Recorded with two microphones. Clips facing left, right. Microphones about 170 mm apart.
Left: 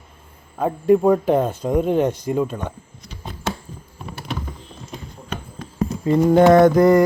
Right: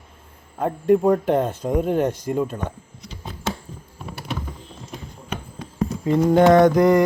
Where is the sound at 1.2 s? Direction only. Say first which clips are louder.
Left 2 dB; 30° left (ahead or behind).